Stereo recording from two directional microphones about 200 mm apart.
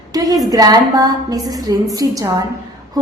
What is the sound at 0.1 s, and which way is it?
A woman's voice, 20° right (ahead or behind).